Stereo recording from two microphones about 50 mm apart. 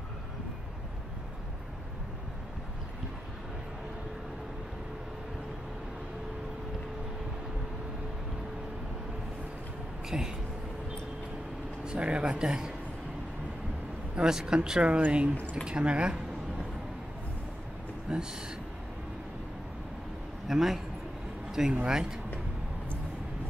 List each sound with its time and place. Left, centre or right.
10.0 s speech: centre
11.8 s speech: right
14.1 s speech: centre
18.1 s speech: centre
20.4 s a man's voice: centre